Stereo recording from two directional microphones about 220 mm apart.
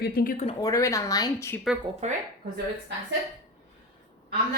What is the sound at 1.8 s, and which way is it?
Speech, 30° right (ahead or behind).